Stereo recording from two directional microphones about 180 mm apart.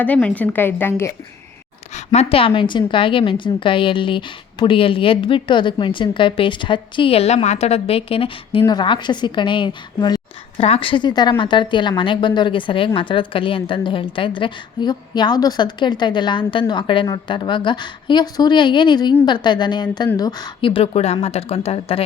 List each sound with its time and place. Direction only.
0.0 s a woman's voice: 5° left (ahead or behind)
2.1 s a woman's voice: 30° left (ahead or behind)